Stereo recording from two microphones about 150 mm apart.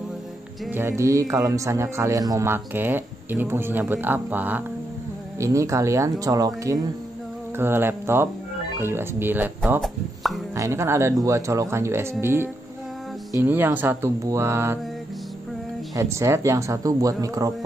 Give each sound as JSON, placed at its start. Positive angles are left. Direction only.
{"t": 0.7, "sound": "speech", "side_deg": -20}
{"t": 9.8, "sound": "speech", "side_deg": 0}
{"t": 10.5, "sound": "speech", "side_deg": -20}
{"t": 16.0, "sound": "speech", "side_deg": -20}